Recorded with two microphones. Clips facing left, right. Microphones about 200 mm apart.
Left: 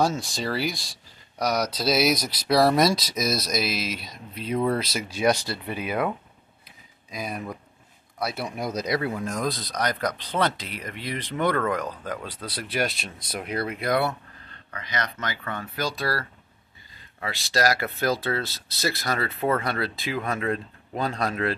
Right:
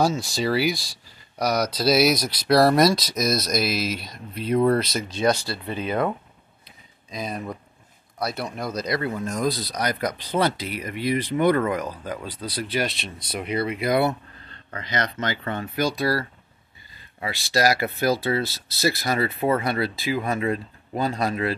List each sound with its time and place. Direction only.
0.0 s speech: 5° right (ahead or behind)
9.1 s speech: centre (ahead or behind)
14.7 s speech: 30° right (ahead or behind); by 21.5 s 5° right (ahead or behind)